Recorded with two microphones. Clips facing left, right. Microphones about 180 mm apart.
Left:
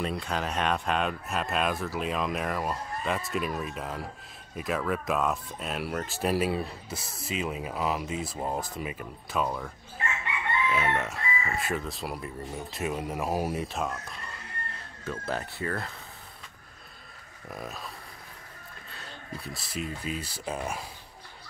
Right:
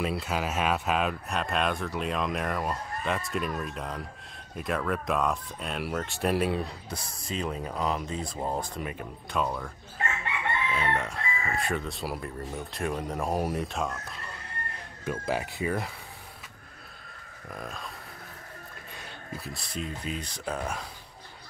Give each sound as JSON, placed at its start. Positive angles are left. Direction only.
{"t": 0.0, "sound": "speech", "side_deg": -5}
{"t": 10.7, "sound": "speech", "side_deg": 5}
{"t": 15.0, "sound": "speech", "side_deg": -15}
{"t": 17.5, "sound": "speech", "side_deg": 5}
{"t": 19.4, "sound": "speech", "side_deg": 0}